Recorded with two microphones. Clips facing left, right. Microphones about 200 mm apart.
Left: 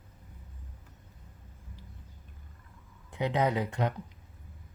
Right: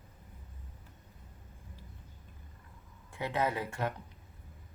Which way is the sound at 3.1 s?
20° left (ahead or behind).